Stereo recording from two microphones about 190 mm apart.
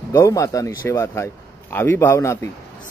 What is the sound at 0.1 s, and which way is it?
A man's voice, 15° left (ahead or behind).